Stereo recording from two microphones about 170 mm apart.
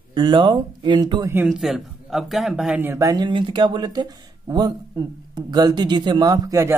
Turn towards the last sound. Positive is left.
turn(degrees=-20)  # may be behind; listen again after turning